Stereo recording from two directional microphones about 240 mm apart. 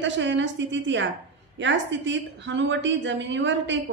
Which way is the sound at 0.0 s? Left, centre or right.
Right.